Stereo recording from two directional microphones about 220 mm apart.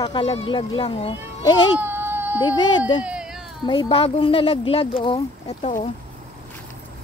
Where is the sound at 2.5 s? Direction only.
20° left (ahead or behind).